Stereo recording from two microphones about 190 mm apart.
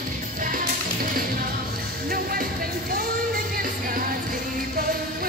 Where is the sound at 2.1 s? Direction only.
50° right (ahead or behind).